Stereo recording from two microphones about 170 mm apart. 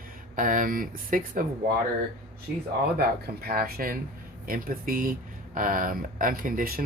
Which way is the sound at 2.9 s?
65° right (ahead or behind).